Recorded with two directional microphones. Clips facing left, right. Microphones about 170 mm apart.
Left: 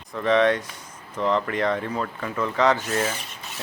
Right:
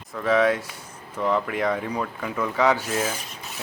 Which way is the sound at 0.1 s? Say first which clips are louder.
Left 1 dB; 5° right (ahead or behind).